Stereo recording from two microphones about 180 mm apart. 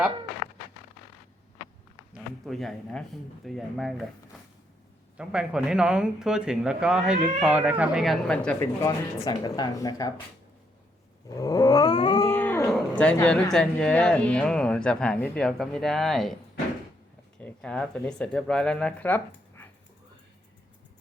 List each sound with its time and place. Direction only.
2.1 s speech: centre (ahead or behind)
5.1 s speech: 5° right (ahead or behind)
8.5 s speech: 15° left (ahead or behind)
11.3 s speech: 20° left (ahead or behind)
12.3 s speech: 10° left (ahead or behind)